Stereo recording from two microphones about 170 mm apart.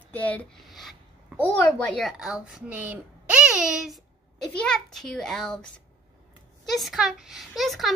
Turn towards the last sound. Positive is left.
turn(degrees=0)  # may be behind; listen again after turning